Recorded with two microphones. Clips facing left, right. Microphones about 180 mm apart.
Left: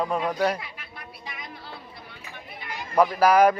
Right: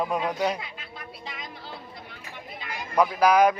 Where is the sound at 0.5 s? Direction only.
25° right (ahead or behind).